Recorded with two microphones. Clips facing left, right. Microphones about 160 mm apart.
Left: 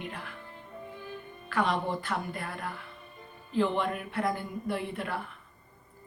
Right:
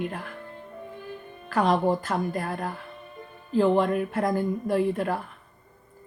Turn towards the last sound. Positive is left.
turn(degrees=-40)  # may be behind; listen again after turning